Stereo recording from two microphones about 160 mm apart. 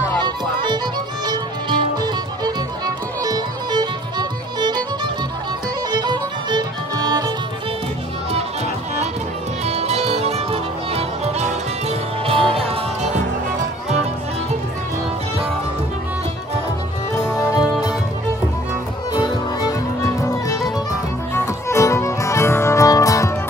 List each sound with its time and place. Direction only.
0.2 s music: 30° right (ahead or behind)
9.7 s music: 40° right (ahead or behind)
17.1 s music: 20° left (ahead or behind)
20.2 s music: 20° left (ahead or behind)